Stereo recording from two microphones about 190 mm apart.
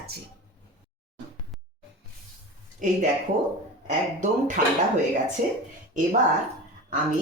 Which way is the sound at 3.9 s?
40° right (ahead or behind).